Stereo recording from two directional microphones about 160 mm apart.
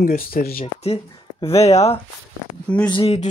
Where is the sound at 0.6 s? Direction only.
40° left (ahead or behind).